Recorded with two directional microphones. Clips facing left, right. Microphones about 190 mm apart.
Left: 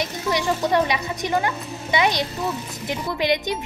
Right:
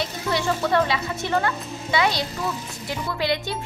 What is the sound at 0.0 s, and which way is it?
A woman's voice, 15° left (ahead or behind).